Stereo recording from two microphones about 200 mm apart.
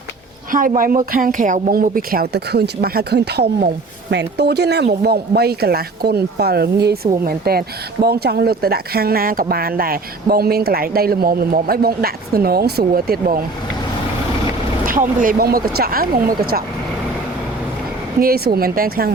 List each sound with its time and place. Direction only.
0.5 s speech: 45° right (ahead or behind)
14.8 s speech: 45° right (ahead or behind)
18.2 s speech: 50° right (ahead or behind)